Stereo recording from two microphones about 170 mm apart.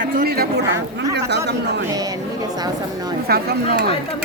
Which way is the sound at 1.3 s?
80° right.